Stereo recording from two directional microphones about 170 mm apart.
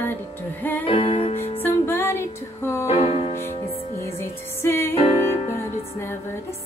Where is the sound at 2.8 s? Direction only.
35° left (ahead or behind).